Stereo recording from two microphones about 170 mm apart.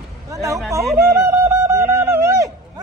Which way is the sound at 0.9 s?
15° right (ahead or behind).